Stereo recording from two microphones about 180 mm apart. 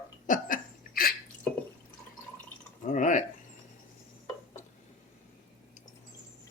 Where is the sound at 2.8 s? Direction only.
45° left (ahead or behind).